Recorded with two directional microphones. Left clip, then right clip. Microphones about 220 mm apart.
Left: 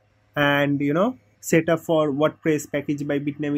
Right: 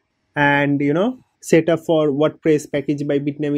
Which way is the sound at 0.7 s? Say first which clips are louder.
Right 3 dB; 10° right (ahead or behind).